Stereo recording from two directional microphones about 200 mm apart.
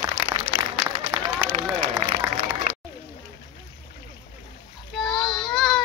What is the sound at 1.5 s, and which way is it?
Run, 30° right (ahead or behind).